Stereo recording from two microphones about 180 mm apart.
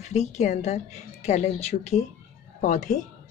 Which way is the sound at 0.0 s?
40° left (ahead or behind).